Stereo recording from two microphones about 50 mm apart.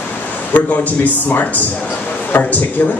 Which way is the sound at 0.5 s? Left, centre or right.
Left.